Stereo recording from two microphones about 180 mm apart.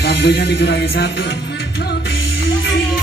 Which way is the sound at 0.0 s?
65° left (ahead or behind).